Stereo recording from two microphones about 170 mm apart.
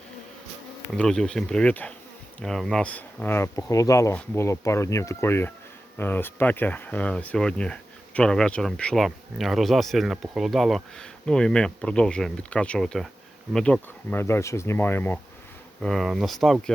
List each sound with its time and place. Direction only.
0.9 s speech: 5° left (ahead or behind)
15.8 s speech: centre (ahead or behind)